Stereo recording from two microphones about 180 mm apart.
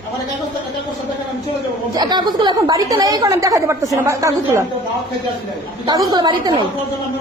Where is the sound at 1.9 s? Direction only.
25° right (ahead or behind).